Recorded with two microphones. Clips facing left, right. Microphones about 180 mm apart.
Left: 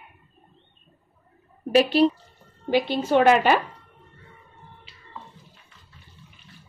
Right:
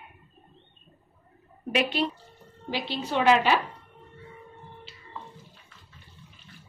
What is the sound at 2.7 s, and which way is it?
Speech, 50° left (ahead or behind).